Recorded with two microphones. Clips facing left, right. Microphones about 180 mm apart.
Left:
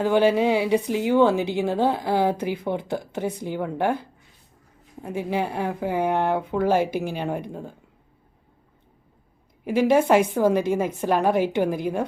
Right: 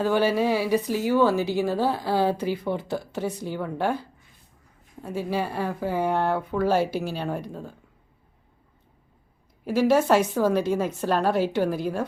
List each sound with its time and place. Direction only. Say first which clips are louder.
0.0 s a woman's voice: left 3 dB; 15° left (ahead or behind)
9.6 s a woman's voice: left 1 dB; 15° left (ahead or behind)